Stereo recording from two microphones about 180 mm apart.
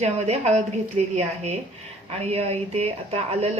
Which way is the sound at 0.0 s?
40° right (ahead or behind).